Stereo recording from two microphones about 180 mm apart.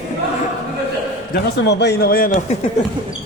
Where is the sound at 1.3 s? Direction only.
65° left (ahead or behind).